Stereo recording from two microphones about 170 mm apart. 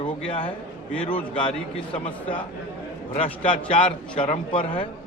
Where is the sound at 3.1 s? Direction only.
35° left (ahead or behind).